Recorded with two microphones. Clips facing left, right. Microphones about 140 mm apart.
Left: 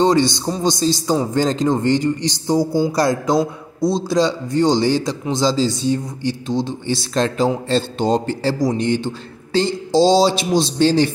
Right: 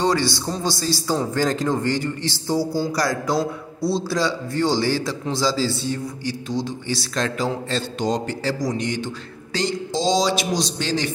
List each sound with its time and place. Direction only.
0.0 s a man's voice: 20° left (ahead or behind)